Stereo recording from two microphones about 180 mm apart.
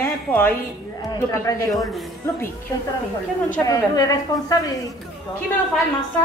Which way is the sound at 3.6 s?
20° left (ahead or behind).